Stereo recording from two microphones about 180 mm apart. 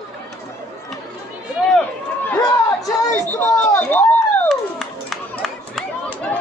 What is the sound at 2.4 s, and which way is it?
Speech, 20° left (ahead or behind).